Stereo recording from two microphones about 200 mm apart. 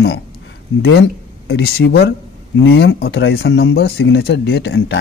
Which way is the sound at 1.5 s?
55° left (ahead or behind).